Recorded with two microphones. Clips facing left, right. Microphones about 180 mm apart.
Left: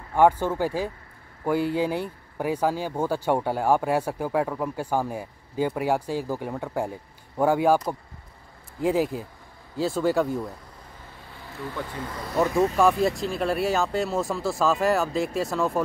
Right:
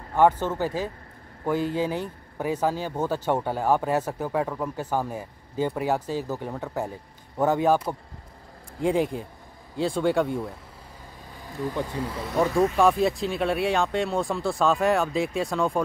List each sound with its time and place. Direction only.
0.1 s speech: 10° left (ahead or behind)
8.8 s speech: 5° left (ahead or behind)
11.3 s speech: 15° right (ahead or behind)
12.1 s speech: centre (ahead or behind)